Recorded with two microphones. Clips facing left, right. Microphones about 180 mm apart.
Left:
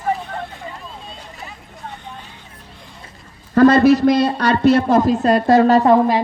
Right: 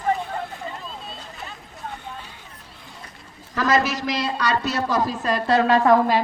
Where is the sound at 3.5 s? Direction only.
60° left (ahead or behind).